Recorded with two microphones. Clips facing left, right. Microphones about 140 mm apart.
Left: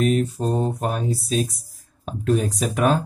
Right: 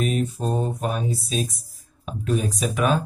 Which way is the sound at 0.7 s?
50° left (ahead or behind).